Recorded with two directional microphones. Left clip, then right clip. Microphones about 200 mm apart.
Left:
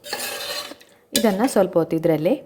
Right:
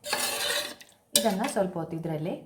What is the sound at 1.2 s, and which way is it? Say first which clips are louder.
A woman's voice: left 10 dB; 50° left (ahead or behind).